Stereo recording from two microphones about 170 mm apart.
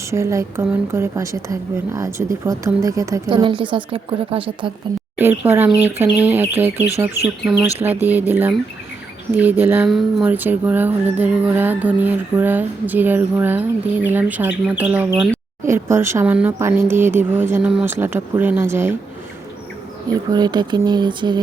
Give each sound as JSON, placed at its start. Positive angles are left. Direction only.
{"t": 0.1, "sound": "a woman's voice", "side_deg": -15}
{"t": 5.1, "sound": "speech", "side_deg": -10}
{"t": 20.3, "sound": "a woman's voice", "side_deg": -25}